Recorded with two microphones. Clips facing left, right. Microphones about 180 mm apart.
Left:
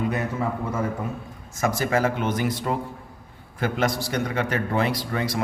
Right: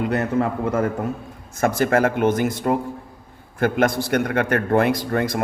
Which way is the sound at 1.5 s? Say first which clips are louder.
Right 5 dB; 55° right (ahead or behind).